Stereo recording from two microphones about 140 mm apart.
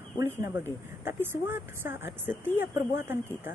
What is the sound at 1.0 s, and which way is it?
Speech, 15° right (ahead or behind).